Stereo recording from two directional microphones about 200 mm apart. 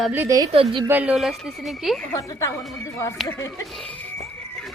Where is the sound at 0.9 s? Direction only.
5° right (ahead or behind); by 3.5 s 15° left (ahead or behind).